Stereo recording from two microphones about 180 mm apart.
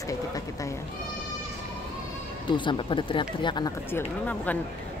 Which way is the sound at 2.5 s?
25° left (ahead or behind).